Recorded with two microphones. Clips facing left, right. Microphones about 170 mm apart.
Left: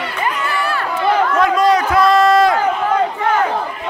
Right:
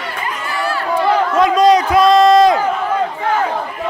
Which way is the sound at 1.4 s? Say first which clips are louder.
Right 6 dB; 20° right (ahead or behind).